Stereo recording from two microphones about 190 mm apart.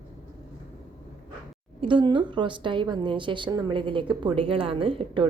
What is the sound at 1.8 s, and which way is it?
A woman's voice, 25° right (ahead or behind).